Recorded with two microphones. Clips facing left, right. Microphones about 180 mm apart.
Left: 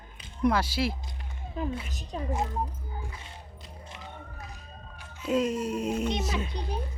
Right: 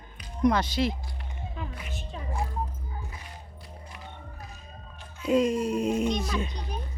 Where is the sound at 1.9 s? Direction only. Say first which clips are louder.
Right 3 dB; 40° left (ahead or behind).